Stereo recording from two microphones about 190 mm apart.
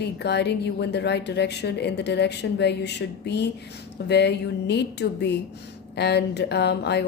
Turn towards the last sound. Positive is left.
turn(degrees=60)  # may be behind; listen again after turning